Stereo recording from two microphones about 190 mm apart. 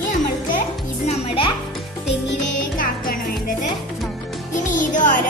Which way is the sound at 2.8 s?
45° left (ahead or behind).